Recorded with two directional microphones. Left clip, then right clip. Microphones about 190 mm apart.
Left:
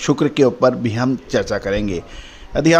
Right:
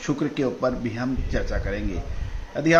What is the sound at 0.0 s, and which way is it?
A man's voice, 60° left (ahead or behind).